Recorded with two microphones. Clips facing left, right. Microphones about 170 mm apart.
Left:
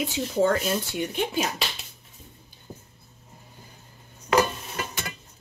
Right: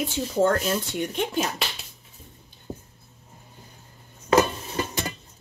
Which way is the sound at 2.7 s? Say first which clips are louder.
Right 6 dB; 25° right (ahead or behind).